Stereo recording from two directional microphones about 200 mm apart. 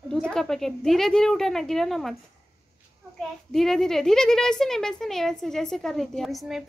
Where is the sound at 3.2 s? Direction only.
Centre (ahead or behind).